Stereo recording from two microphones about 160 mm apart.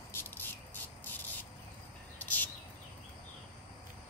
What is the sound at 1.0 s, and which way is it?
Insect, 10° left (ahead or behind).